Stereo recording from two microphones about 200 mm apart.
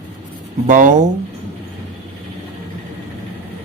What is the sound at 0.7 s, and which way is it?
Speech, 40° right (ahead or behind).